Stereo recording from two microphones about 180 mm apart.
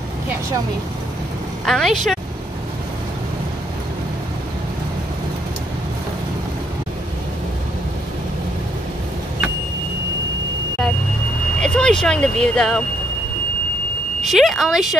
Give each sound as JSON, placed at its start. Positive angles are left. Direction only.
{"t": 1.7, "sound": "speech", "side_deg": 0}
{"t": 11.6, "sound": "speech", "side_deg": 5}
{"t": 14.3, "sound": "speech", "side_deg": 0}